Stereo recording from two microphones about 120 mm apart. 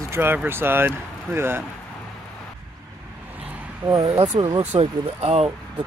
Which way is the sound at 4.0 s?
60° right (ahead or behind).